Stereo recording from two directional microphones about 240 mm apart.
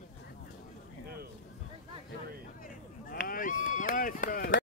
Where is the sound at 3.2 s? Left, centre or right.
Left.